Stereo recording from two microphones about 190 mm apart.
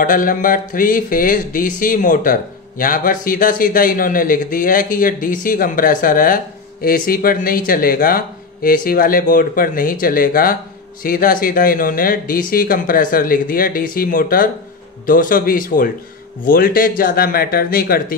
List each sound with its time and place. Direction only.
0.0 s speech: 45° left (ahead or behind)